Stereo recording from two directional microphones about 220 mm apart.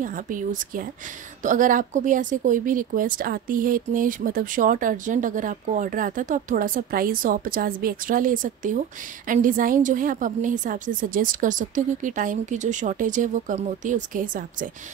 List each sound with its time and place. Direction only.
0.0 s speech: 35° right (ahead or behind)